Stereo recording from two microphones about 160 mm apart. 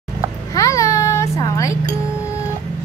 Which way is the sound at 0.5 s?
20° left (ahead or behind).